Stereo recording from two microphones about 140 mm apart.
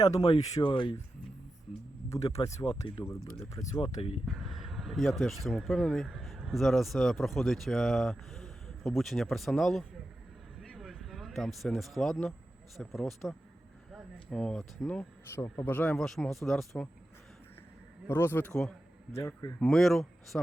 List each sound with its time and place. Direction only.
0.0 s speech: 30° left (ahead or behind)
2.0 s speech: 25° left (ahead or behind)
2.6 s speech: 35° left (ahead or behind)
4.3 s a sound: centre (ahead or behind)
5.5 s speech: centre (ahead or behind)
10.6 s a sound: centre (ahead or behind)
12.7 s speech: centre (ahead or behind)
18.1 s speech: 15° left (ahead or behind)
19.1 s a man's voice: 20° left (ahead or behind)
19.5 s speech: 5° left (ahead or behind)